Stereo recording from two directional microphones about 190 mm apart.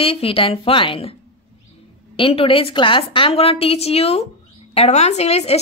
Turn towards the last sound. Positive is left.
turn(degrees=35)  # may be behind; listen again after turning